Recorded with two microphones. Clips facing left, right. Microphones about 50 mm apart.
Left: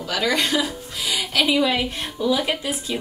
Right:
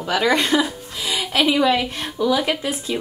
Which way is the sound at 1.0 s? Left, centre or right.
Right.